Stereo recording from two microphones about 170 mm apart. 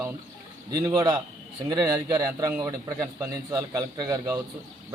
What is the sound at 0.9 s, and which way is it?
A man's voice, 15° right (ahead or behind).